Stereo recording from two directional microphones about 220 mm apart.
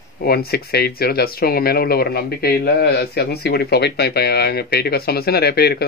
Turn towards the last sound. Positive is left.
turn(degrees=45)  # may be behind; listen again after turning